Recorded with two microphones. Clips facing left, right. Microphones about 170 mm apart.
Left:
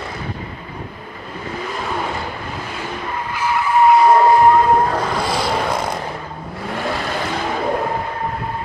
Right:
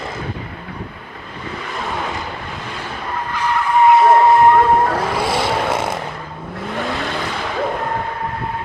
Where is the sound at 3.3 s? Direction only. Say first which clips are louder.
Even; 5° left (ahead or behind).